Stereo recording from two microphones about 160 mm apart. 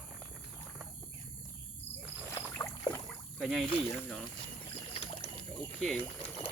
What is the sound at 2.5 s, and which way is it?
Rowboat, 20° left (ahead or behind).